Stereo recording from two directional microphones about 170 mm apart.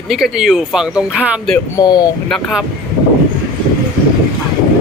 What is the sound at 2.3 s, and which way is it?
Speech, 5° right (ahead or behind).